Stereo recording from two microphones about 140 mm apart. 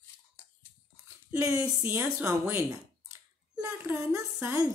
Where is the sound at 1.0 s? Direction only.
20° right (ahead or behind).